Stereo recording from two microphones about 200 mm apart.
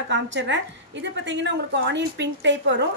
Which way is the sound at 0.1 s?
65° right (ahead or behind).